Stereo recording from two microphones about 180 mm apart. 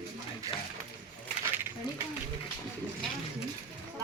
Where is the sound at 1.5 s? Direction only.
10° right (ahead or behind).